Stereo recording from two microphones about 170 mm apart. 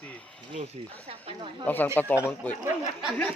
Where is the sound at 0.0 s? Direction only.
5° left (ahead or behind).